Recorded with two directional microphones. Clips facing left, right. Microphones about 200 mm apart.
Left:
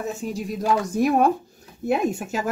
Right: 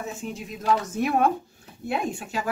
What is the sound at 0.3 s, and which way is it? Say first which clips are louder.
Speech: left 2 dB; 35° left (ahead or behind).